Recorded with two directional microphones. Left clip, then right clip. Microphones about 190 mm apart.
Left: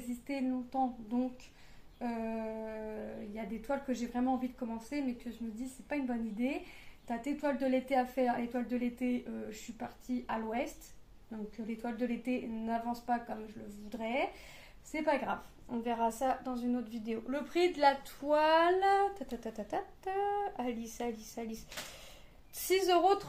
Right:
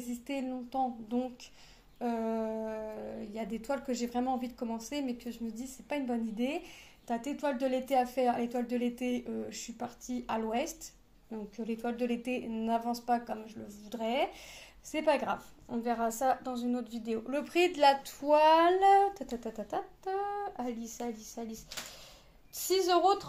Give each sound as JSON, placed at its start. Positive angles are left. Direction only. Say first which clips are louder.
{"t": 0.3, "sound": "a woman's voice", "louder": "even", "side_deg": -50}
{"t": 19.4, "sound": "speech", "louder": "right 1 dB", "side_deg": -15}
{"t": 20.1, "sound": "speech", "louder": "left 2 dB", "side_deg": 0}
{"t": 22.6, "sound": "speech", "louder": "right 1 dB", "side_deg": 5}